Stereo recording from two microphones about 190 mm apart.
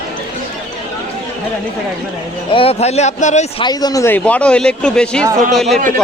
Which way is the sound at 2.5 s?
30° left (ahead or behind).